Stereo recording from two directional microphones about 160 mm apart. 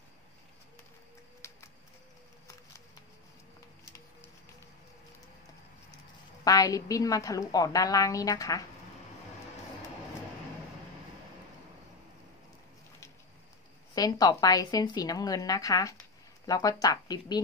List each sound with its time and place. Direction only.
1.4 s music: 20° left (ahead or behind)
6.4 s a woman's voice: 20° left (ahead or behind)
13.9 s a woman's voice: 25° left (ahead or behind)